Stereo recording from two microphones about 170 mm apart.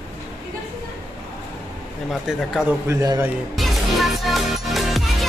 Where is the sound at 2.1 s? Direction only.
Centre (ahead or behind).